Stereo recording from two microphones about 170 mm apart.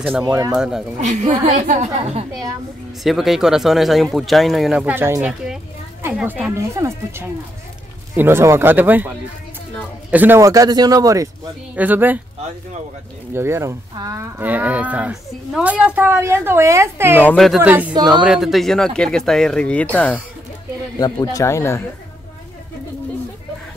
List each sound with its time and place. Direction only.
0.2 s a man's voice: 20° right (ahead or behind)
0.6 s speech: 5° right (ahead or behind)
1.0 s a woman's voice: 45° right (ahead or behind)
3.0 s speech: centre (ahead or behind)
10.1 s a man's voice: 10° right (ahead or behind)
11.7 s speech: 10° right (ahead or behind)
13.3 s speech: 15° right (ahead or behind)
17.2 s speech: 5° left (ahead or behind)
17.6 s speech: 10° right (ahead or behind)
17.9 s a man's voice: 25° right (ahead or behind)
18.2 s speech: 5° right (ahead or behind)
21.0 s speech: 20° left (ahead or behind)